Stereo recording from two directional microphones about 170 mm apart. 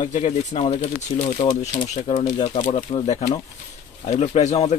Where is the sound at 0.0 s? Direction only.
45° left (ahead or behind).